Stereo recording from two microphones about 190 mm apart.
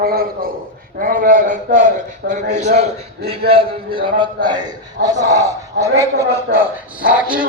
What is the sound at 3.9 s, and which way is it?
Speech, 25° right (ahead or behind).